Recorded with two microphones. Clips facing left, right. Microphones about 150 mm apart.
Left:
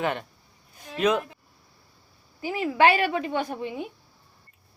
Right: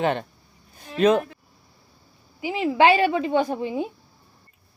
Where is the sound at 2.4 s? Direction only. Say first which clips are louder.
Right 2 dB; 20° right (ahead or behind).